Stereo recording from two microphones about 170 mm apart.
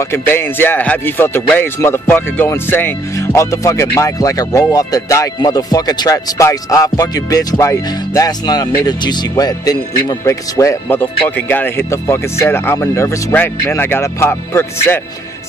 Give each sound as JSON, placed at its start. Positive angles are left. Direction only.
{"t": 0.0, "sound": "speech", "side_deg": 15}